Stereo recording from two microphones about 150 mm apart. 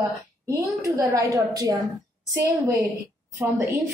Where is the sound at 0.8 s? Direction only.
20° right (ahead or behind).